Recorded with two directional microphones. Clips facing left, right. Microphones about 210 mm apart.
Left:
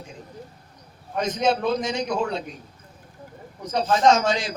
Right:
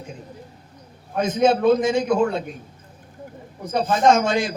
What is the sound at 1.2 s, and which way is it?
A man's voice, 55° right (ahead or behind).